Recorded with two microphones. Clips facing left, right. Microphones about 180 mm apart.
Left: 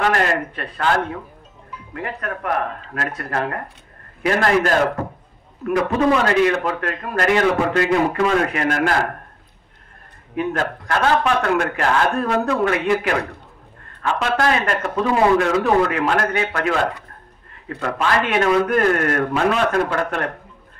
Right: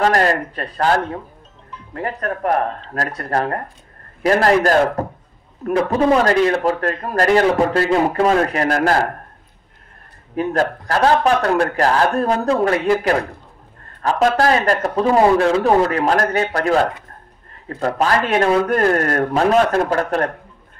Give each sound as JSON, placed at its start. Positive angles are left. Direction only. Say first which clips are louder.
{"t": 0.0, "sound": "a man's voice", "louder": "right 3 dB", "side_deg": -40}
{"t": 10.3, "sound": "a man's voice", "louder": "right 3 dB", "side_deg": -35}